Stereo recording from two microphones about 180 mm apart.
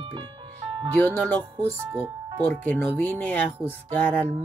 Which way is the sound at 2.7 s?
10° left (ahead or behind).